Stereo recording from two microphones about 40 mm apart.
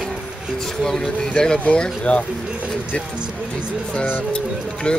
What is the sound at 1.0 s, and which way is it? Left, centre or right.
Speech, centre.